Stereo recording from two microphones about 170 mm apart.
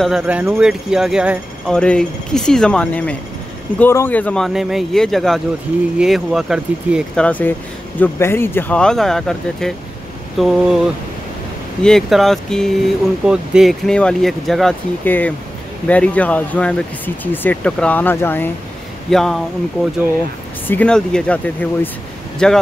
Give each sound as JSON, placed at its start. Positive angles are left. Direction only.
{"t": 0.0, "sound": "speech", "side_deg": -5}
{"t": 1.7, "sound": "speech", "side_deg": 5}
{"t": 7.2, "sound": "speech", "side_deg": 10}
{"t": 11.8, "sound": "speech", "side_deg": 0}
{"t": 19.0, "sound": "speech", "side_deg": 0}
{"t": 20.6, "sound": "speech", "side_deg": 10}